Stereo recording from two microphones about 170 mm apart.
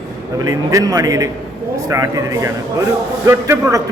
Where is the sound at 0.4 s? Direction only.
20° right (ahead or behind).